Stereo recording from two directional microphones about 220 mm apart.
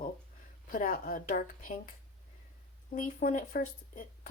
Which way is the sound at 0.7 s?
40° left (ahead or behind).